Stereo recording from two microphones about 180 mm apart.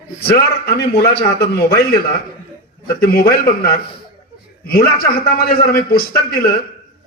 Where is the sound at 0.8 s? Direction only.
65° left (ahead or behind).